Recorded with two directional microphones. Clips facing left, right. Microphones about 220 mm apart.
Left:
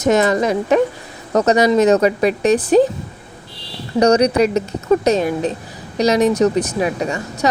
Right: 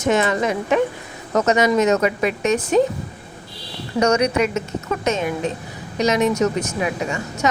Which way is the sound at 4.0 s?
35° left (ahead or behind).